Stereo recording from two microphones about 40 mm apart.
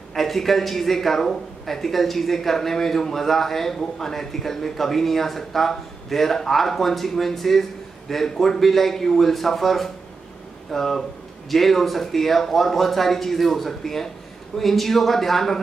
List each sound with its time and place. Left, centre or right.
0.1 s speech: centre